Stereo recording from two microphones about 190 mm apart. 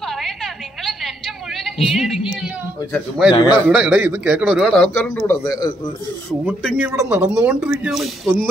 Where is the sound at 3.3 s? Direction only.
25° left (ahead or behind).